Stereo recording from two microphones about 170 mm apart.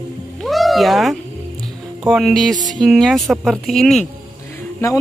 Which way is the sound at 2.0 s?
Centre (ahead or behind).